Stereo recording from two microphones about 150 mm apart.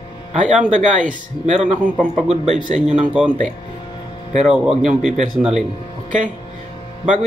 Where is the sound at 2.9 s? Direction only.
5° right (ahead or behind).